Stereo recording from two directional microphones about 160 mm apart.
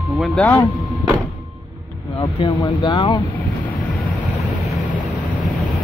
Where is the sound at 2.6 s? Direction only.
30° left (ahead or behind).